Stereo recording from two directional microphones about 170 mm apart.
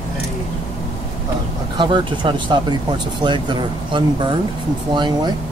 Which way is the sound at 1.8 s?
30° right (ahead or behind).